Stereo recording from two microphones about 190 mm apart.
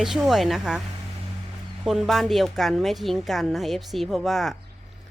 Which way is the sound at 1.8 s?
Centre (ahead or behind).